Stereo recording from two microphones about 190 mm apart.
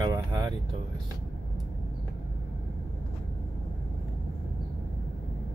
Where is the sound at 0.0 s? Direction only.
25° right (ahead or behind).